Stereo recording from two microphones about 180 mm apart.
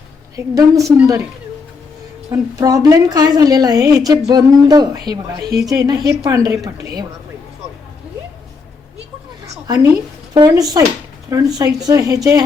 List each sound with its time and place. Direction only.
0.4 s a woman's voice: 15° right (ahead or behind)
2.3 s a woman's voice: 20° right (ahead or behind)
9.6 s a woman's voice: 20° right (ahead or behind)